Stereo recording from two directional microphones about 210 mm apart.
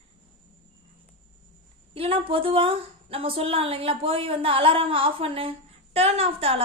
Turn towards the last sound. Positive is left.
turn(degrees=-30)  # may be behind; listen again after turning